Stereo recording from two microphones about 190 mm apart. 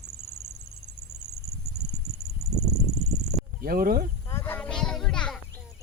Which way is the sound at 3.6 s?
50° right (ahead or behind).